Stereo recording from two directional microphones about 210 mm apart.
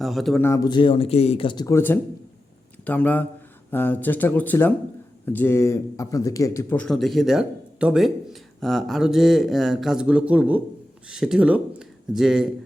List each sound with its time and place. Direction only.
0.0 s speech: centre (ahead or behind)